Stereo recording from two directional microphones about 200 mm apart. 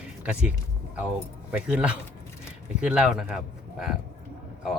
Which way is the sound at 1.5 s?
5° right (ahead or behind).